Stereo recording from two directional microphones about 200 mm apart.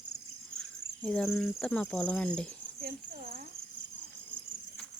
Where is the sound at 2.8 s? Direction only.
45° right (ahead or behind).